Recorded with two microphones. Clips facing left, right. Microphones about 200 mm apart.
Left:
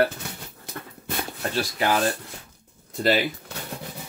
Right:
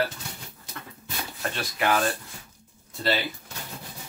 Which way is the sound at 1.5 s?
35° left (ahead or behind).